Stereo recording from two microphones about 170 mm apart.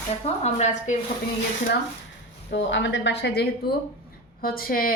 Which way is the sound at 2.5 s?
90° left.